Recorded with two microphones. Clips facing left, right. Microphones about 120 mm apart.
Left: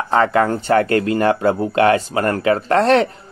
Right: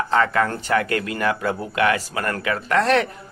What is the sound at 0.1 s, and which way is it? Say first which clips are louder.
Speech: left 6 dB; 25° left (ahead or behind).